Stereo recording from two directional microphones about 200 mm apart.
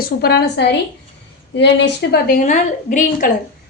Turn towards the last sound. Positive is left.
turn(degrees=40)  # may be behind; listen again after turning